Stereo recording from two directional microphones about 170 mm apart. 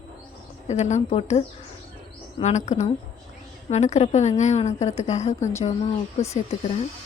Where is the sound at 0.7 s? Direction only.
45° left (ahead or behind).